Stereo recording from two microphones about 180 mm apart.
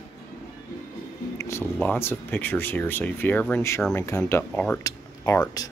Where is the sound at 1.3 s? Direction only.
15° left (ahead or behind).